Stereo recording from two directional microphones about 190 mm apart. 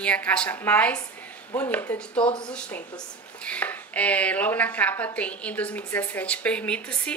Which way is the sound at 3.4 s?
10° left (ahead or behind).